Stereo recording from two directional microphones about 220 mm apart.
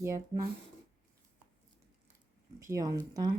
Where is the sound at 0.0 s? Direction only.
15° right (ahead or behind).